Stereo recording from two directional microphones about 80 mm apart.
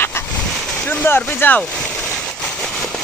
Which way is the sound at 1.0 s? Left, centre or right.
Left.